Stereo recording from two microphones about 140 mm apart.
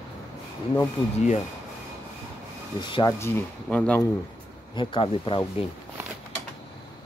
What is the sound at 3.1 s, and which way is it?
Speech, 15° left (ahead or behind).